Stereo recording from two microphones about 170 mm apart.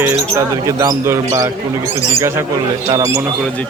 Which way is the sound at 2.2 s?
15° right (ahead or behind).